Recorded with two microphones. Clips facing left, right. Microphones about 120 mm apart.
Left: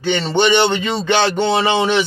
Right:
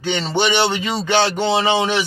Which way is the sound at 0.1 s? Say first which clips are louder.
Left 4 dB; 10° right (ahead or behind).